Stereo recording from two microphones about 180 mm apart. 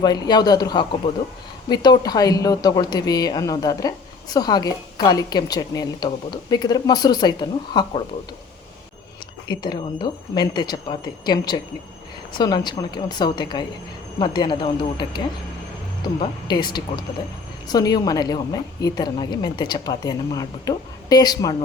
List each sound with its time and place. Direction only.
0.0 s a woman's voice: 25° left (ahead or behind)
9.5 s a woman's voice: 25° left (ahead or behind)